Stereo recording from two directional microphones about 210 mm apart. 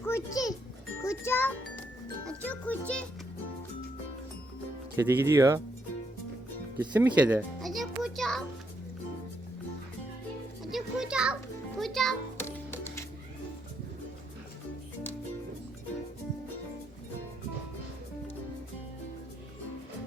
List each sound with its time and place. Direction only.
0.0 s music: 15° left (ahead or behind)
4.9 s speech: 10° right (ahead or behind)
6.7 s music: 10° right (ahead or behind)
10.6 s children playing: centre (ahead or behind)
11.8 s music: centre (ahead or behind)